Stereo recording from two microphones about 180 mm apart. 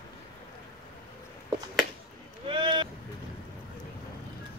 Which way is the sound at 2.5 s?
25° right (ahead or behind).